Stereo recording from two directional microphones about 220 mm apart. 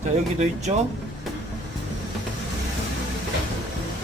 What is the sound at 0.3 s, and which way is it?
Speech, 30° right (ahead or behind).